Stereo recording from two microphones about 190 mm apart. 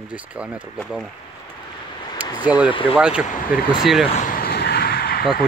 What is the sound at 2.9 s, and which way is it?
Speech, 5° right (ahead or behind).